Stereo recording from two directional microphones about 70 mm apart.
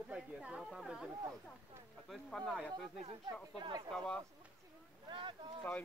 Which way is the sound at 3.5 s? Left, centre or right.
Right.